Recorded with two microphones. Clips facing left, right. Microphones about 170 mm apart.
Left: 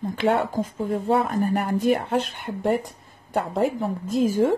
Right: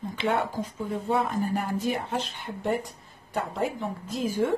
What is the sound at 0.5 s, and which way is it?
Speech, 50° left (ahead or behind).